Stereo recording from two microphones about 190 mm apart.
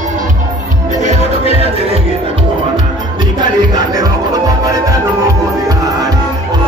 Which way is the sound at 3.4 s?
20° right (ahead or behind).